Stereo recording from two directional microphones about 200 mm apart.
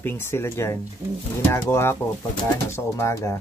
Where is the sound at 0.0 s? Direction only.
10° left (ahead or behind).